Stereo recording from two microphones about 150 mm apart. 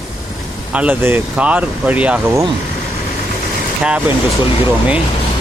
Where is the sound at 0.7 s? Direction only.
10° right (ahead or behind).